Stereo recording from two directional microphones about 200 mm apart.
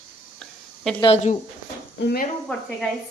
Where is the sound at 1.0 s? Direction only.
35° left (ahead or behind).